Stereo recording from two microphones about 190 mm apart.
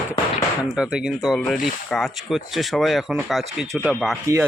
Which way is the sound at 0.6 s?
Centre (ahead or behind).